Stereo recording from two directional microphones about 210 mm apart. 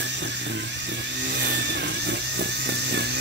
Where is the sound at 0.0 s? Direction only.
55° right (ahead or behind).